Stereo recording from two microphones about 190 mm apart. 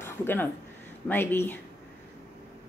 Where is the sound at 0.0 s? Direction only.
10° left (ahead or behind).